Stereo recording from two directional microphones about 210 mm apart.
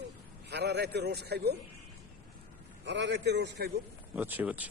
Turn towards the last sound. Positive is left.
turn(degrees=-5)  # may be behind; listen again after turning